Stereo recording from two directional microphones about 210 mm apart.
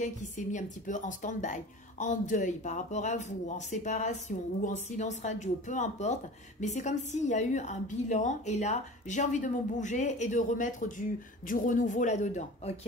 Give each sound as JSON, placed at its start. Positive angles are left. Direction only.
{"t": 0.0, "sound": "a woman's voice", "side_deg": 35}